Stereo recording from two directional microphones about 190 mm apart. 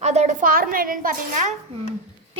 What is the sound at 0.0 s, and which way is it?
A woman's voice, 35° right (ahead or behind).